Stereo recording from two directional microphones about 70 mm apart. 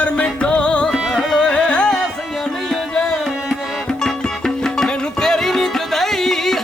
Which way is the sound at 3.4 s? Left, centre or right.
Centre.